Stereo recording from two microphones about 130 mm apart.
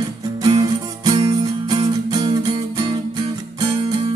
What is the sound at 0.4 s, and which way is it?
Music, 30° right (ahead or behind).